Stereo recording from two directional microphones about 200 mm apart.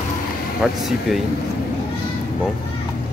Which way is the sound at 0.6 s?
Centre (ahead or behind).